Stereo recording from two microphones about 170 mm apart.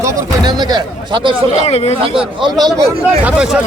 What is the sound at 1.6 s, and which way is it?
Speech, 40° left (ahead or behind).